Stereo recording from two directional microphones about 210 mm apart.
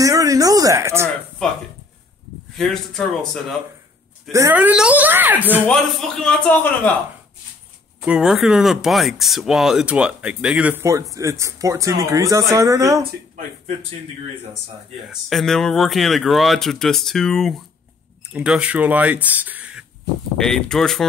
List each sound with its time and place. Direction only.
0.0 s a sound: 15° right (ahead or behind)
2.5 s speech: centre (ahead or behind)
4.3 s speech: 10° right (ahead or behind)
5.7 s speech: centre (ahead or behind)
8.0 s speech: 5° right (ahead or behind)
15.2 s speech: centre (ahead or behind)